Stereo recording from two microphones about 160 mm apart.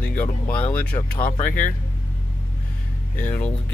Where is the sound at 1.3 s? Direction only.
50° left (ahead or behind).